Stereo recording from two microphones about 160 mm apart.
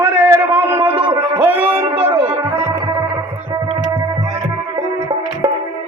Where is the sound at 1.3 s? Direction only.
10° right (ahead or behind).